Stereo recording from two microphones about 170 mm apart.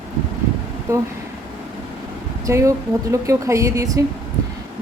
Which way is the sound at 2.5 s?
15° right (ahead or behind).